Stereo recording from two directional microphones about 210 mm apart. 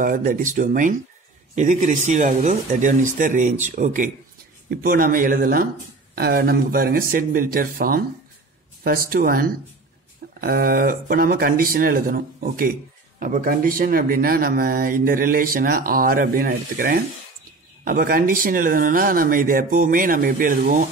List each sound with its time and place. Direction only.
0.0 s speech: 45° right (ahead or behind)